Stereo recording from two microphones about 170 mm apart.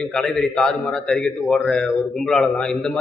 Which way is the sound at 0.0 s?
5° left (ahead or behind).